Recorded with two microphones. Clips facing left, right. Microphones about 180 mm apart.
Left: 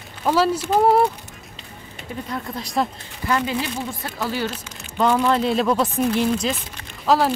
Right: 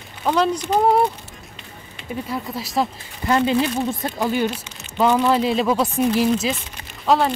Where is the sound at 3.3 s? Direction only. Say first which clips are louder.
Right 5 dB; 25° right (ahead or behind).